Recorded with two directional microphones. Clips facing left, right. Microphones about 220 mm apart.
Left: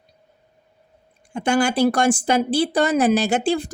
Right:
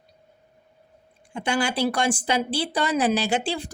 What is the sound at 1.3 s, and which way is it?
A woman's voice, 45° left (ahead or behind).